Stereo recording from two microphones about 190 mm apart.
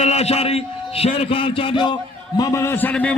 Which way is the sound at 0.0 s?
35° left (ahead or behind).